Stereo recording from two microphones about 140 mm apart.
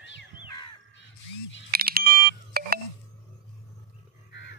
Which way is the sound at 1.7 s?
90° right.